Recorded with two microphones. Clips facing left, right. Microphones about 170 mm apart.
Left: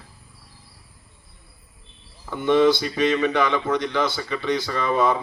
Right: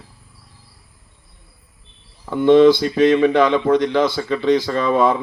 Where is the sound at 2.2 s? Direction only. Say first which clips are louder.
Right 7 dB; 55° right (ahead or behind).